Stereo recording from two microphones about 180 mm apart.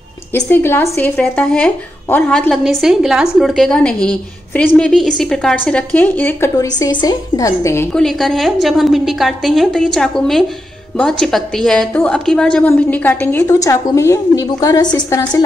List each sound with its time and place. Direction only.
0.3 s a woman's voice: 10° left (ahead or behind)
6.8 s a woman's voice: 20° left (ahead or behind)
7.9 s a woman's voice: centre (ahead or behind); by 15.4 s 20° left (ahead or behind)